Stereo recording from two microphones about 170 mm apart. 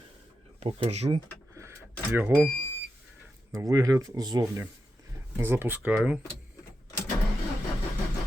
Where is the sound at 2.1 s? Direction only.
10° right (ahead or behind).